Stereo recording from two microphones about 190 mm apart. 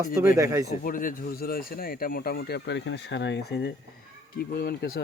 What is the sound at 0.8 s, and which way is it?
Speech, 45° left (ahead or behind).